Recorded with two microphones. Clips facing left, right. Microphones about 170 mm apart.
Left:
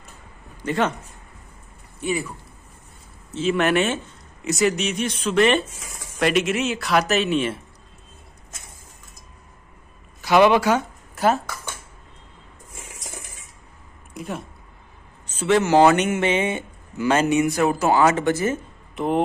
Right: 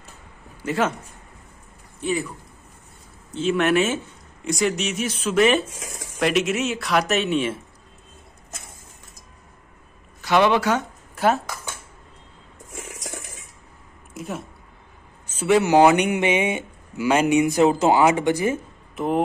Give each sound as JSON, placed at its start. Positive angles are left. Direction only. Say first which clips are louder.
{"t": 0.6, "sound": "a man's voice", "louder": "even", "side_deg": -5}
{"t": 2.0, "sound": "speech", "louder": "even", "side_deg": 10}
{"t": 3.3, "sound": "speech", "louder": "even", "side_deg": 0}
{"t": 10.2, "sound": "speech", "louder": "left 3 dB", "side_deg": 10}
{"t": 12.7, "sound": "a sound", "louder": "right 5 dB", "side_deg": -65}
{"t": 14.1, "sound": "speech", "louder": "even", "side_deg": 0}
{"t": 18.9, "sound": "speech", "louder": "left 1 dB", "side_deg": 0}